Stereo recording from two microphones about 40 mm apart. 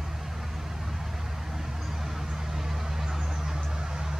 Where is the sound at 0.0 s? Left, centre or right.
Centre.